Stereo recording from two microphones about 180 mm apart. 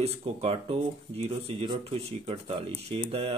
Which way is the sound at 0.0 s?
35° right (ahead or behind).